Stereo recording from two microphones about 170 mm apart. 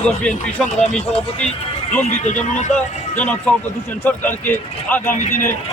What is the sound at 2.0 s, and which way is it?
Speech, 45° left (ahead or behind).